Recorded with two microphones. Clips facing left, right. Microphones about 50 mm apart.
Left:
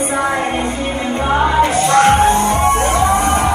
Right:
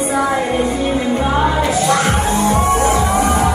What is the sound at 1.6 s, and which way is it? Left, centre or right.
Music, left.